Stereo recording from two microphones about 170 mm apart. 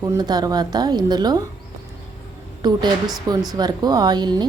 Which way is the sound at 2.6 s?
25° right (ahead or behind).